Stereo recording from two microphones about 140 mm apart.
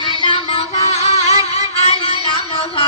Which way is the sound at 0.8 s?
50° left (ahead or behind).